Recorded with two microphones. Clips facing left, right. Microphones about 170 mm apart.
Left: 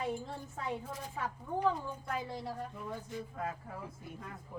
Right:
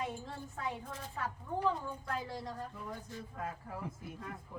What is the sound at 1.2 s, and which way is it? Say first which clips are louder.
Speech: left 1 dB; 15° left (ahead or behind).